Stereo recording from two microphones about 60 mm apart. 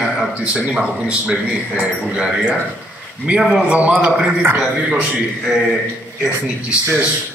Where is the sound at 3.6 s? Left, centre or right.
Centre.